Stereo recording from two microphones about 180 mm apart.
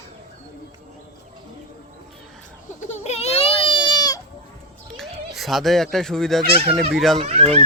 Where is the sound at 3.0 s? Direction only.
35° left (ahead or behind).